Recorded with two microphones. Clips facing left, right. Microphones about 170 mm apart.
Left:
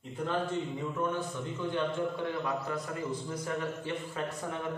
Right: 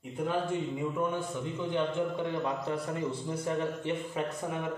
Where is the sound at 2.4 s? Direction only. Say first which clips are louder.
Right 2 dB; 30° right (ahead or behind).